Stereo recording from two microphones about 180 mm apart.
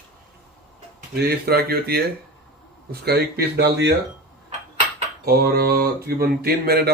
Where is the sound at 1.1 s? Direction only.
60° right (ahead or behind).